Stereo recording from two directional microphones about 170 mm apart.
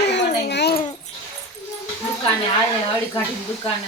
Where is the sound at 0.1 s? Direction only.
90° left.